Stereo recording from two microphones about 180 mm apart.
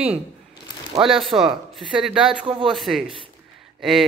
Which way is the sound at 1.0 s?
Centre (ahead or behind).